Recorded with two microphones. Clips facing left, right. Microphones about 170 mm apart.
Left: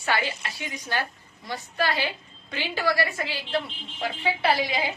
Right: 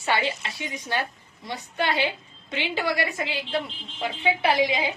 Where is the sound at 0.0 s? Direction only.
25° right (ahead or behind).